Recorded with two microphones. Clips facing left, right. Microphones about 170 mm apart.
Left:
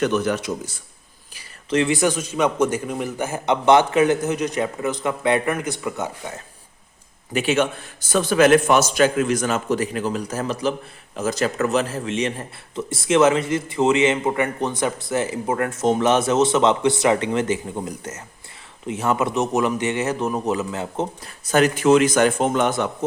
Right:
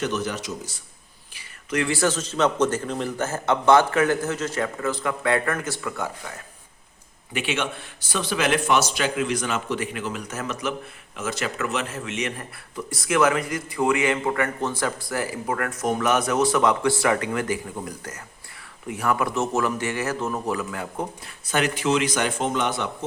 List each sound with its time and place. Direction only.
0.0 s a man's voice: 55° left (ahead or behind)
1.7 s a man's voice: 20° left (ahead or behind)
7.3 s a man's voice: 40° left (ahead or behind); by 21.1 s 25° left (ahead or behind)
21.4 s speech: 40° left (ahead or behind)